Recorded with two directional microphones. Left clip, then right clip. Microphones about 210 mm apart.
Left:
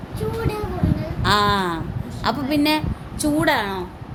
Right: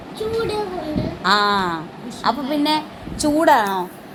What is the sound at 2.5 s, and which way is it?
Speech, 35° left (ahead or behind).